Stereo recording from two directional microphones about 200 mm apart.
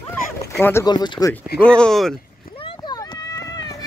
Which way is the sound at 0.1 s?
10° left (ahead or behind).